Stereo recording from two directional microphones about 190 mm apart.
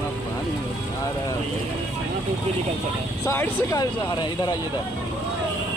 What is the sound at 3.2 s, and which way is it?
Speech, 15° left (ahead or behind).